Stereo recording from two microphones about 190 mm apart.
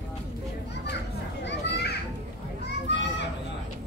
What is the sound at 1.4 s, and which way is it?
Children playing, 65° left (ahead or behind).